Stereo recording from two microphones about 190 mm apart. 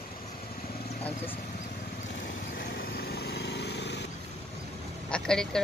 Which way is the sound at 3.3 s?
60° left (ahead or behind).